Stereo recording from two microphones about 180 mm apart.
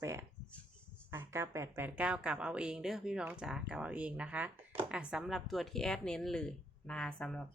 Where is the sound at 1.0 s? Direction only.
15° right (ahead or behind).